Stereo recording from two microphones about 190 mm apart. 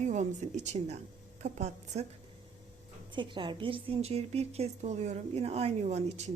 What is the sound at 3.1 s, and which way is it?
A woman's voice, 25° right (ahead or behind).